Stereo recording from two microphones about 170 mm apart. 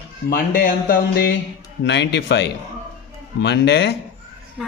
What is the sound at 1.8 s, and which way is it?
Speech, 90° left.